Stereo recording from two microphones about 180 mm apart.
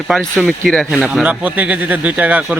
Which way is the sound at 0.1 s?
Centre (ahead or behind).